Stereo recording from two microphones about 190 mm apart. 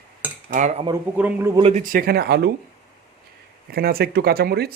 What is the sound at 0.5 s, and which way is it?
Cutlery, 40° right (ahead or behind).